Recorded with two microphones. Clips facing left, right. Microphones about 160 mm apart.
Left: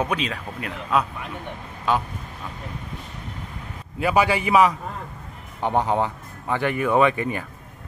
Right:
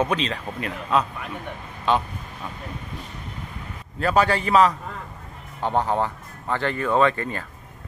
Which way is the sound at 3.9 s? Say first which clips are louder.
Even; 10° left (ahead or behind).